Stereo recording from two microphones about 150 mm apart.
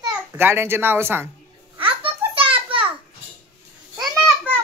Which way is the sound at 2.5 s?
35° right (ahead or behind).